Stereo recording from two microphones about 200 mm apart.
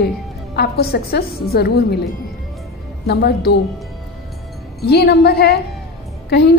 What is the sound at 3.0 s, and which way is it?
Speech, 50° left (ahead or behind).